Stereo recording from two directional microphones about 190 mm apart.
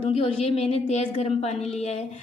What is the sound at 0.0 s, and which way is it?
A woman's voice, 30° left (ahead or behind).